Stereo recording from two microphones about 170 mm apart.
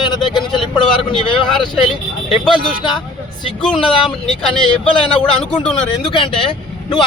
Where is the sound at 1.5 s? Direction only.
Centre (ahead or behind).